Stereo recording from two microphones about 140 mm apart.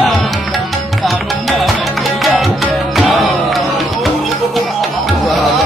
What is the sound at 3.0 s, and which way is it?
Music, centre (ahead or behind).